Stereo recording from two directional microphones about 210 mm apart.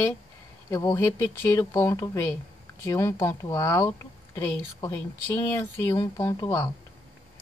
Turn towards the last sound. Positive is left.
turn(degrees=15)  # may be behind; listen again after turning